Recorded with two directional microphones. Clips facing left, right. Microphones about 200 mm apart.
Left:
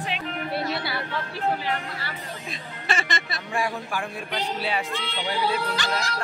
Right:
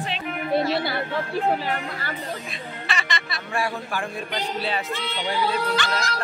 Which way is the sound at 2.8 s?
45° left (ahead or behind).